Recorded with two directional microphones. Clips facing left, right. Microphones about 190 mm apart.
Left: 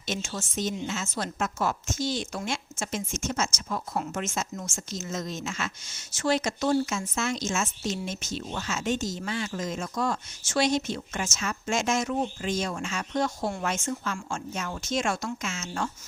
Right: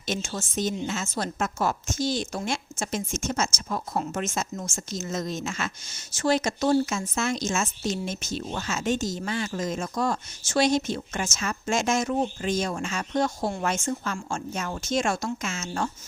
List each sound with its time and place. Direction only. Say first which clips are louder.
0.1 s a woman's voice: right 2 dB; 35° right (ahead or behind)